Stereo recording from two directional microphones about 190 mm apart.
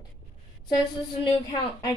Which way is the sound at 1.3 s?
25° left (ahead or behind).